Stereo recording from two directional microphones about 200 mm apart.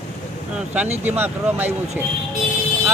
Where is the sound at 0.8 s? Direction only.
35° right (ahead or behind).